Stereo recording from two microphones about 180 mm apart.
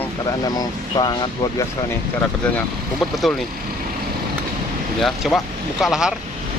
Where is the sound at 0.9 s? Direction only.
25° left (ahead or behind).